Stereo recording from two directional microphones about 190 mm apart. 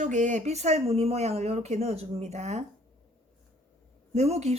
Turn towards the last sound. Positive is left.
turn(degrees=-35)  # may be behind; listen again after turning